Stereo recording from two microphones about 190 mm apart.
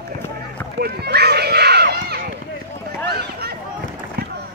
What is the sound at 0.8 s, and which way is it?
Run, 55° right (ahead or behind).